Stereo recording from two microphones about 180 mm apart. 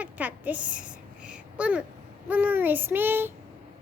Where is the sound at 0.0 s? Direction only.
10° right (ahead or behind).